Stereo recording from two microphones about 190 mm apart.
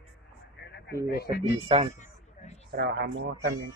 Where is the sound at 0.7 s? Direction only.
65° left (ahead or behind).